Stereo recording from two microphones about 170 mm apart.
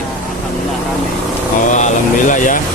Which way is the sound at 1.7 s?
45° left (ahead or behind).